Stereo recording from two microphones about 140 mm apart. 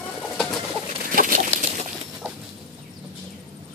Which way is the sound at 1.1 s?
70° right (ahead or behind).